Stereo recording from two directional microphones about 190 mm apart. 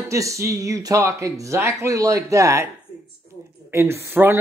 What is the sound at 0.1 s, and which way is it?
Speech, 15° right (ahead or behind).